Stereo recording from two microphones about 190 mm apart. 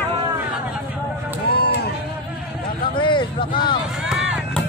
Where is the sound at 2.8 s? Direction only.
25° left (ahead or behind).